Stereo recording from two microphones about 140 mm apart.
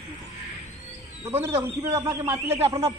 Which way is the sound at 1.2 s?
15° right (ahead or behind).